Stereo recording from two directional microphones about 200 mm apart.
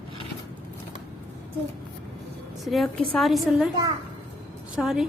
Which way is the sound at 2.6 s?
Centre (ahead or behind).